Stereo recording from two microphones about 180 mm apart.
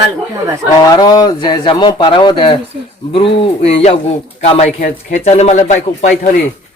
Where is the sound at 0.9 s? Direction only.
25° left (ahead or behind).